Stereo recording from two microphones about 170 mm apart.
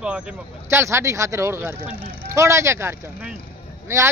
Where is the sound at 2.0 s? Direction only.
30° left (ahead or behind).